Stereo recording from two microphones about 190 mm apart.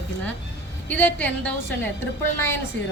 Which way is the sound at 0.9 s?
10° left (ahead or behind).